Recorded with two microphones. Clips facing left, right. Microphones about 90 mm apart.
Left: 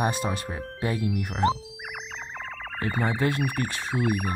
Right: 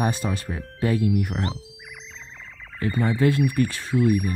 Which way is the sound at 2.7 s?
45° left (ahead or behind).